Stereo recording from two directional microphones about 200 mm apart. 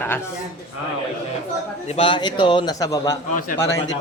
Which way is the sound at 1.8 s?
30° left (ahead or behind).